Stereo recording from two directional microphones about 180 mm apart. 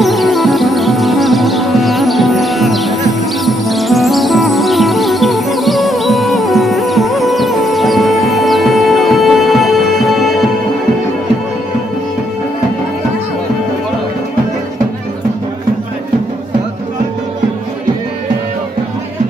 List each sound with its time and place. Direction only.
0.0 s music: centre (ahead or behind)